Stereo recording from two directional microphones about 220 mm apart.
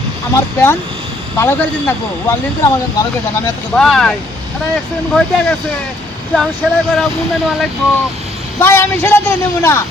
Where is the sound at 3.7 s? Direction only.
Centre (ahead or behind).